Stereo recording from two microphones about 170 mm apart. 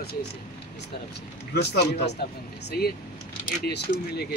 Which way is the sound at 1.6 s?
80° left.